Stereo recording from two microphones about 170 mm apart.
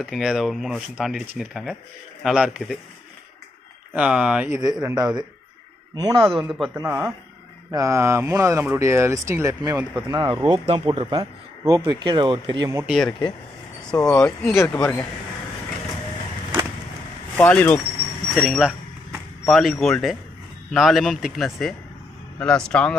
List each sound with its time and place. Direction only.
0.0 s speech: 5° right (ahead or behind)
3.9 s speech: 5° right (ahead or behind)
4.5 s speech: 25° right (ahead or behind)
6.7 s speech: 15° right (ahead or behind)
12.8 s speech: centre (ahead or behind)
13.9 s speech: 20° left (ahead or behind)
17.4 s speech: 10° left (ahead or behind)